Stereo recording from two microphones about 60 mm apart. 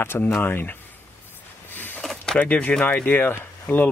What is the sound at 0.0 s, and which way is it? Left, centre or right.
Speech, left.